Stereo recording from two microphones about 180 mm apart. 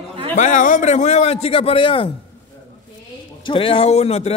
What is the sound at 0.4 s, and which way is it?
A man's voice, 45° left (ahead or behind).